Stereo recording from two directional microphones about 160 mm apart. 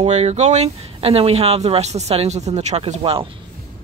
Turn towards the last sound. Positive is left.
turn(degrees=-35)  # may be behind; listen again after turning